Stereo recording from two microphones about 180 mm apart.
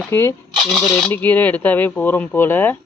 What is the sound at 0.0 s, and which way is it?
Speech, 10° left (ahead or behind).